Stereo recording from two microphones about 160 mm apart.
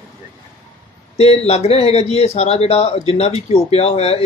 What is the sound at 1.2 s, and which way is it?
A man's voice, 40° left (ahead or behind).